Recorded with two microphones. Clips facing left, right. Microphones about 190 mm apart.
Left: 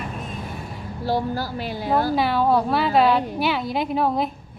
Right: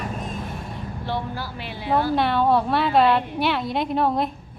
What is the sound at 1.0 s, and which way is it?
Speech, 40° left (ahead or behind).